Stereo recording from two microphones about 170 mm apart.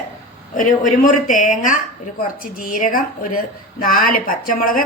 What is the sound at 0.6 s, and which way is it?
Speech, 50° left (ahead or behind).